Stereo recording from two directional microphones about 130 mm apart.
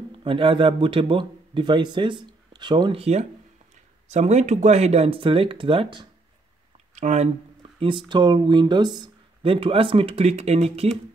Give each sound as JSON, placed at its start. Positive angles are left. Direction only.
{"t": 0.2, "sound": "speech", "side_deg": -40}
{"t": 7.0, "sound": "speech", "side_deg": -65}
{"t": 7.6, "sound": "speech", "side_deg": -40}